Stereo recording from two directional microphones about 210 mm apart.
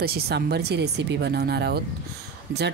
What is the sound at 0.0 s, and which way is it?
Speech, 50° right (ahead or behind).